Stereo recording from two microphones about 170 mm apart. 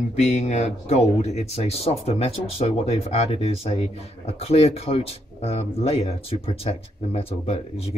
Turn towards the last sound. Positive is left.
turn(degrees=35)  # may be behind; listen again after turning